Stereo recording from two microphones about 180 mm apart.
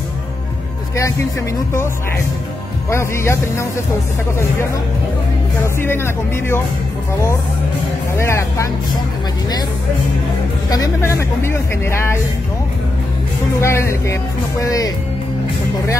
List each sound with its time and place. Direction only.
2.9 s speech: 15° left (ahead or behind)
5.8 s speech: 15° left (ahead or behind)
8.2 s speech: 15° left (ahead or behind)
10.7 s speech: 15° left (ahead or behind)
13.6 s speech: 15° left (ahead or behind)